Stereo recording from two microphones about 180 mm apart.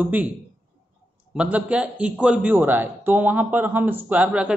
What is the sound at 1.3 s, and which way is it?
Speech, 5° right (ahead or behind).